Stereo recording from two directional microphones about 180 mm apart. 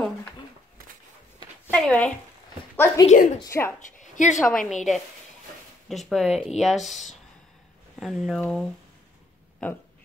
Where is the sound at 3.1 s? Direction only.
45° left (ahead or behind).